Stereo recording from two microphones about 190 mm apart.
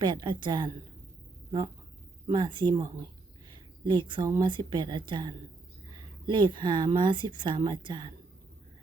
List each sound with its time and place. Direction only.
0.0 s a woman's voice: 25° right (ahead or behind)